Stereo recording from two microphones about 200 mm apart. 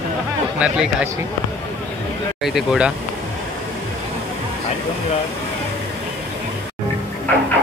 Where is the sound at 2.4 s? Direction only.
Centre (ahead or behind).